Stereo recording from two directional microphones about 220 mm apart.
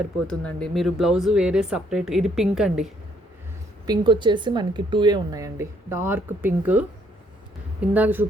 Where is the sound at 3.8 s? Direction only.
20° right (ahead or behind).